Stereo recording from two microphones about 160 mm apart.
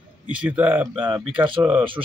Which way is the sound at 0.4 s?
10° right (ahead or behind).